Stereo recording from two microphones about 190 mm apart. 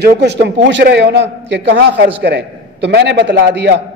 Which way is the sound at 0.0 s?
60° right (ahead or behind).